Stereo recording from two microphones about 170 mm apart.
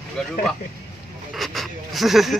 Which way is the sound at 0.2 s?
5° left (ahead or behind).